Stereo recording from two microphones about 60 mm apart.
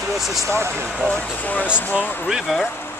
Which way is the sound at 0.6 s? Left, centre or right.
Right.